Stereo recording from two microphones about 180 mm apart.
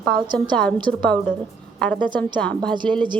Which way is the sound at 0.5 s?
5° left (ahead or behind).